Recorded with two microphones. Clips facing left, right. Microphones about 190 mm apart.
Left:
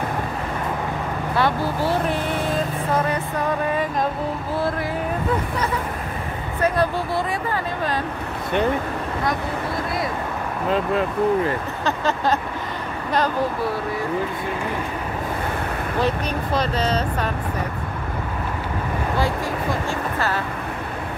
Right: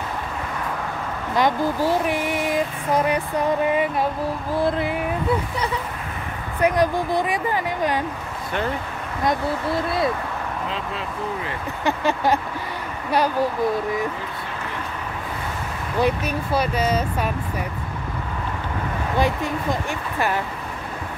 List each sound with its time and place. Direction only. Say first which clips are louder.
1.3 s speech: right 2 dB; 15° right (ahead or behind)
6.6 s speech: right 2 dB; 15° right (ahead or behind)
10.7 s speech: left 8 dB; 50° left (ahead or behind)
11.8 s speech: right 2 dB; 15° right (ahead or behind)
16.0 s speech: right 2 dB; 10° right (ahead or behind)
19.1 s speech: right 3 dB; 20° right (ahead or behind)